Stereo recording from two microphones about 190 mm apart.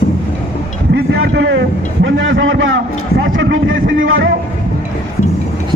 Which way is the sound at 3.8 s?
50° right (ahead or behind).